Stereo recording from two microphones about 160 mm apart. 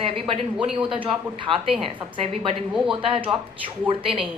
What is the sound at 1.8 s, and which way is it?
Speech, 35° right (ahead or behind).